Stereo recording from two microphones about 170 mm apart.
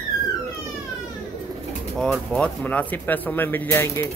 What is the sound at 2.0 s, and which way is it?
Speech, 5° left (ahead or behind).